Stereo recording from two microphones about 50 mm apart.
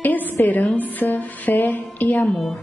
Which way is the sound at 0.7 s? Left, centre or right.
Left.